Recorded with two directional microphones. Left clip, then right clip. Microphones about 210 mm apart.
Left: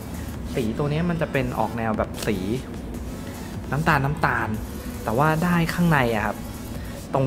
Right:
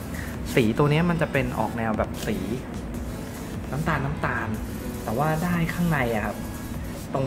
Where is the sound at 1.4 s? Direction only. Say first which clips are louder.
Left 1 dB; 10° left (ahead or behind).